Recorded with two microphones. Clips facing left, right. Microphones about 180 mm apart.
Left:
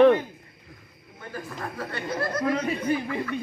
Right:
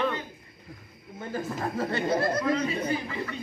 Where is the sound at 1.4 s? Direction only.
25° right (ahead or behind).